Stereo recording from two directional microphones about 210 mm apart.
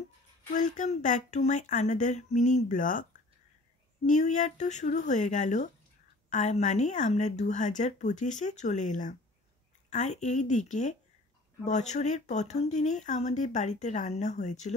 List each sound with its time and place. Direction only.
0.5 s speech: 35° left (ahead or behind)